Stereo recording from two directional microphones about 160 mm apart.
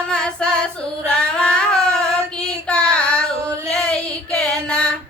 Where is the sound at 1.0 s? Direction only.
5° left (ahead or behind).